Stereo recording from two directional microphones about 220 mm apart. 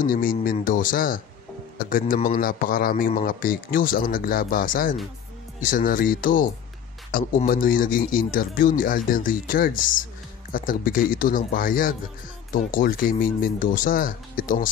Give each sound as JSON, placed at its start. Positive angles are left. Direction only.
{"t": 0.0, "sound": "a man's voice", "side_deg": 40}